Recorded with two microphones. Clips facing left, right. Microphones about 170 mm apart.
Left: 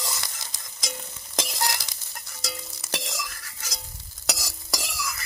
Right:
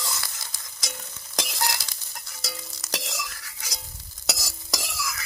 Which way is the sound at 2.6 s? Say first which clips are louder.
Right 1 dB; 10° left (ahead or behind).